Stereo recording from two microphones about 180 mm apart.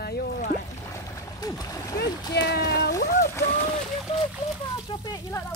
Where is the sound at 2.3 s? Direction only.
60° left (ahead or behind).